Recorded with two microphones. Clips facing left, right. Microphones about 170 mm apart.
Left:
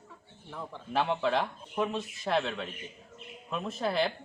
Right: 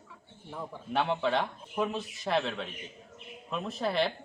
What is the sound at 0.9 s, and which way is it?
A man's voice, centre (ahead or behind).